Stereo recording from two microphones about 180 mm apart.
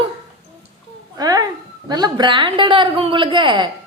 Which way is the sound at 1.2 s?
20° right (ahead or behind).